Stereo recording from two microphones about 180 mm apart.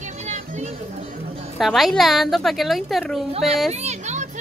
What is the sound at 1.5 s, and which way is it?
A woman's voice, centre (ahead or behind).